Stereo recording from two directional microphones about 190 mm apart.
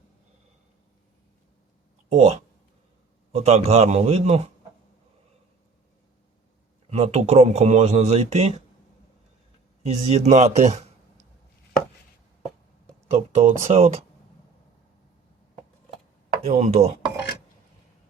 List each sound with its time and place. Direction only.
2.0 s a man's voice: 35° right (ahead or behind)
6.9 s a man's voice: 35° right (ahead or behind)
9.8 s a man's voice: 35° right (ahead or behind)
13.1 s a man's voice: 35° right (ahead or behind)
16.5 s a man's voice: 35° right (ahead or behind)